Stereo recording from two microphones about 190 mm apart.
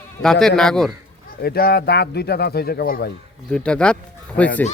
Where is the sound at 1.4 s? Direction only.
55° left (ahead or behind).